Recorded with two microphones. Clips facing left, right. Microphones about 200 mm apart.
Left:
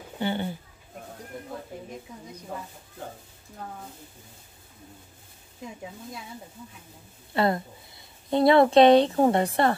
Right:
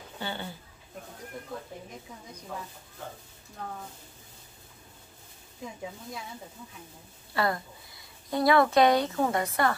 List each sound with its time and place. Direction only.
0.2 s speech: 20° left (ahead or behind)
7.3 s a woman's voice: 25° left (ahead or behind)